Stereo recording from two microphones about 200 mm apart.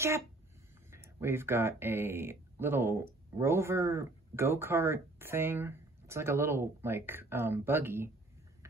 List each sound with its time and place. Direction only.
1.2 s speech: 10° right (ahead or behind)